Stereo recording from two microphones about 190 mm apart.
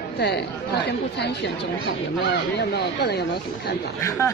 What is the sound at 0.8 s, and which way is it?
Speech, 65° left (ahead or behind).